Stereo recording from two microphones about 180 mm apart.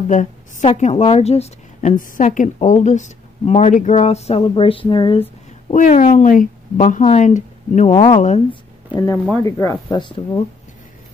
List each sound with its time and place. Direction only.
0.1 s a woman's voice: 45° left (ahead or behind); by 5.2 s 25° left (ahead or behind)
5.7 s speech: 40° left (ahead or behind)
7.9 s speech: 20° left (ahead or behind)